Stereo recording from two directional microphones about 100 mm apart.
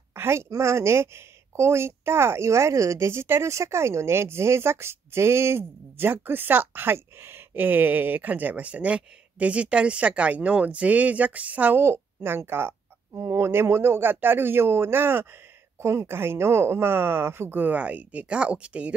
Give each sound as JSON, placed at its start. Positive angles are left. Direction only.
{"t": 0.1, "sound": "a woman's voice", "side_deg": -25}